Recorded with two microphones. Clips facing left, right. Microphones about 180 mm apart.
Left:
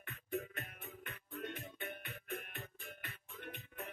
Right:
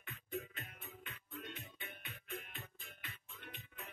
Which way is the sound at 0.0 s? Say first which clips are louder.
Left 3 dB; 55° left (ahead or behind).